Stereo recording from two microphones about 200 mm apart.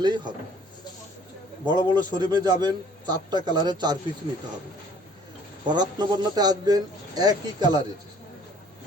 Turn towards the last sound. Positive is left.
turn(degrees=-20)  # may be behind; listen again after turning